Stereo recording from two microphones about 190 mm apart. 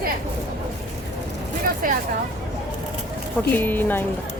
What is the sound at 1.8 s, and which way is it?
Speech, 45° right (ahead or behind).